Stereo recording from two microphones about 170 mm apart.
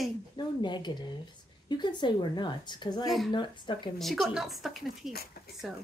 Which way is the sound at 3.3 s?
30° left (ahead or behind).